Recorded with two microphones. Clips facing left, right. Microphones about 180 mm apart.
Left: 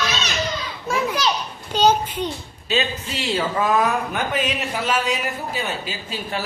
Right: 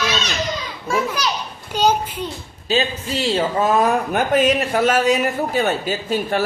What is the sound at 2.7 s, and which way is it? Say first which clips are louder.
Speech: right 3 dB; 35° right (ahead or behind).